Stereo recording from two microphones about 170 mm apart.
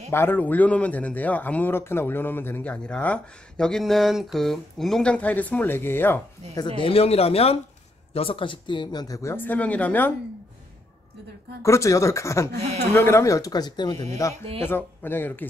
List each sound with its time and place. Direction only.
0.1 s speech: 15° left (ahead or behind)
6.8 s speech: 35° left (ahead or behind); by 10.1 s 10° left (ahead or behind)
11.6 s speech: 20° left (ahead or behind)
12.5 s speech: 35° right (ahead or behind)
12.9 s speech: 15° left (ahead or behind)